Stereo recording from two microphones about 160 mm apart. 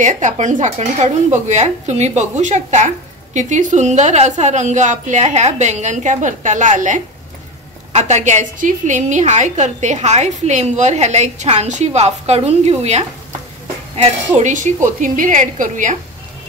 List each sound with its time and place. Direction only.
0.0 s a woman's voice: 50° right (ahead or behind)
14.0 s a woman's voice: 50° right (ahead or behind)